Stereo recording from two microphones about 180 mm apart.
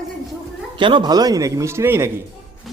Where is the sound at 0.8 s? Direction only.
25° right (ahead or behind).